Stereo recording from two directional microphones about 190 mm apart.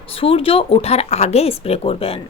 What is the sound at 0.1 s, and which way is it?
A woman's voice, 30° left (ahead or behind).